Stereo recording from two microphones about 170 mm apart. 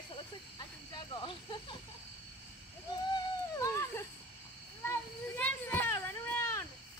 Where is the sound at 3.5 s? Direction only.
15° left (ahead or behind).